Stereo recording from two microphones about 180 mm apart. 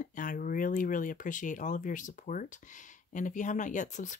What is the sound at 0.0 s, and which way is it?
Speech, 45° left (ahead or behind).